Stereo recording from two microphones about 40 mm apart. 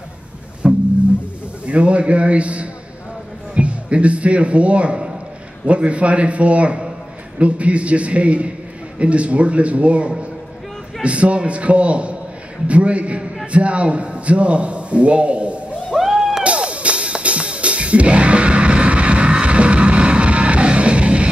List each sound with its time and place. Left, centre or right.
0.6 s music: right
1.7 s a man's voice: right
15.9 s a sound: centre
16.4 s music: right